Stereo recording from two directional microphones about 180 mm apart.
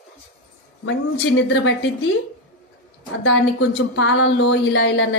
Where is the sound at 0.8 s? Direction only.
90° left.